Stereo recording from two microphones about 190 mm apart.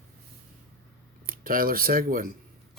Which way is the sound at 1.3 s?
50° right (ahead or behind).